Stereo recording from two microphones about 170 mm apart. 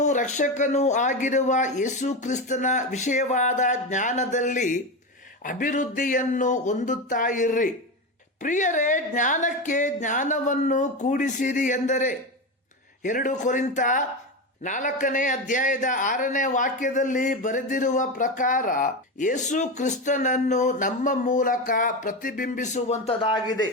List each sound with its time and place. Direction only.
0.0 s a man's voice: 45° left (ahead or behind)